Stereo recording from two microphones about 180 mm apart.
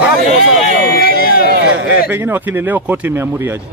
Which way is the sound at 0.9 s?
55° left (ahead or behind).